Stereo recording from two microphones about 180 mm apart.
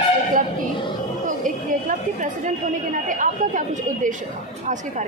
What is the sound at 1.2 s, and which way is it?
Chatter, 45° right (ahead or behind).